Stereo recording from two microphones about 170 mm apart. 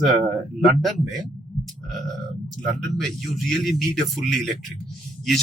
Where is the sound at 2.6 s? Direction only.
Centre (ahead or behind).